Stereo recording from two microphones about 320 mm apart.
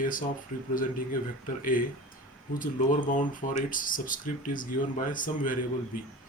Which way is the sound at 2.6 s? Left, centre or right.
Left.